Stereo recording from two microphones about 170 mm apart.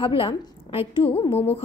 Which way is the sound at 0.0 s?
30° left (ahead or behind).